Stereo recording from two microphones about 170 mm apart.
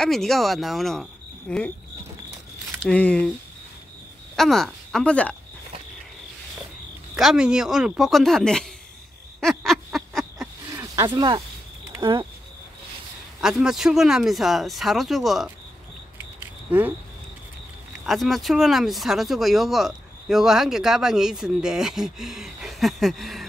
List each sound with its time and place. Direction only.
0.0 s speech: centre (ahead or behind)
2.8 s speech: 5° left (ahead or behind)
4.4 s speech: centre (ahead or behind)
7.2 s speech: 5° right (ahead or behind)
9.4 s a sound: centre (ahead or behind)
10.7 s a sound: 20° right (ahead or behind)
11.9 s speech: 20° right (ahead or behind)
13.4 s speech: 5° right (ahead or behind)
18.0 s speech: centre (ahead or behind)